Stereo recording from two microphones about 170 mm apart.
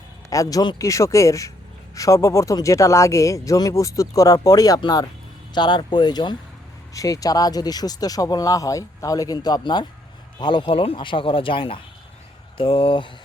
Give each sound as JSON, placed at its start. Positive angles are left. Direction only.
{"t": 0.3, "sound": "a man's voice", "side_deg": 20}